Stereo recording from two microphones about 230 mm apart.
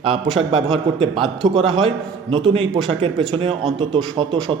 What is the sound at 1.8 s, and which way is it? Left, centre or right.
A man's voice, right.